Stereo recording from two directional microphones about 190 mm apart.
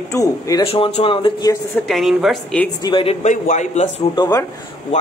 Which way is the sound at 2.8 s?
30° left (ahead or behind).